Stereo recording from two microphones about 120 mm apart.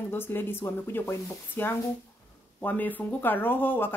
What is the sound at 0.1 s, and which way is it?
Speech, 15° left (ahead or behind).